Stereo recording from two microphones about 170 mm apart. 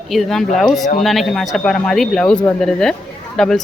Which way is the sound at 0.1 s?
Centre (ahead or behind).